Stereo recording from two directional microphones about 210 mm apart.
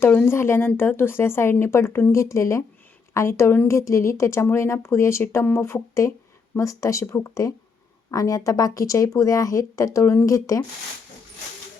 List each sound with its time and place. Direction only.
0.0 s speech: 10° left (ahead or behind)